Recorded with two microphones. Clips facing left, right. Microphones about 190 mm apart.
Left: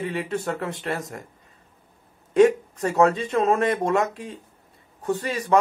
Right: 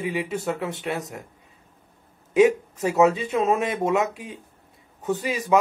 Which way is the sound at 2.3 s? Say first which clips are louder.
Left 1 dB; 5° right (ahead or behind).